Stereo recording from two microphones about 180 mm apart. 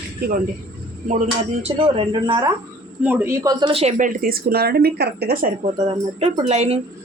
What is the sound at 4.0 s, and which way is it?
Speech, 50° right (ahead or behind).